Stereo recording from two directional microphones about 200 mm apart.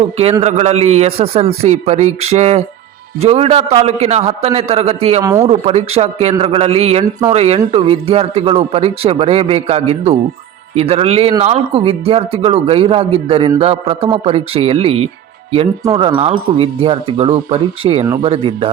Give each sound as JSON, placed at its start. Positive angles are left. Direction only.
{"t": 0.0, "sound": "a man's voice", "side_deg": -30}
{"t": 5.2, "sound": "speech", "side_deg": -15}
{"t": 5.5, "sound": "a man's voice", "side_deg": -30}